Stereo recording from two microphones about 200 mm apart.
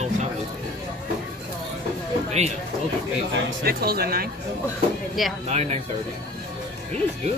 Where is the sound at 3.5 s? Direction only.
50° right (ahead or behind).